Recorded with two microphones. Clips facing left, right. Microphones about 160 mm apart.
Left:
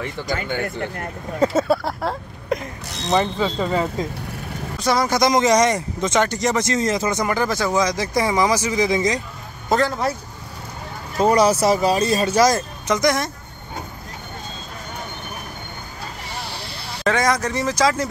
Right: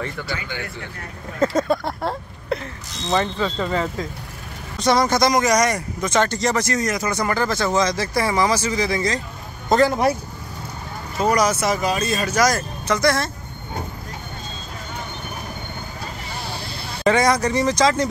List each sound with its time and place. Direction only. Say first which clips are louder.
0.3 s speech: left 5 dB; 50° left (ahead or behind)
1.4 s speech: left 1 dB; 5° left (ahead or behind)
2.5 s speech: left 1 dB; 10° left (ahead or behind)
5.2 s speech: left 2 dB; 25° left (ahead or behind)
9.8 s speech: right 5 dB; 10° right (ahead or behind)
11.1 s speech: left 3 dB; 30° left (ahead or behind)
17.0 s speech: right 2 dB; centre (ahead or behind)